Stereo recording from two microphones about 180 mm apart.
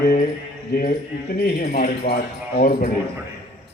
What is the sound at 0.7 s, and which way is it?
Speech, 55° left (ahead or behind).